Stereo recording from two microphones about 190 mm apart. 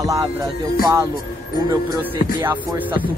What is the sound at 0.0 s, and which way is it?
Speech, 20° right (ahead or behind).